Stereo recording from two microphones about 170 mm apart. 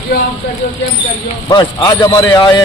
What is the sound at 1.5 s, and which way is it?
A man's voice, 25° left (ahead or behind).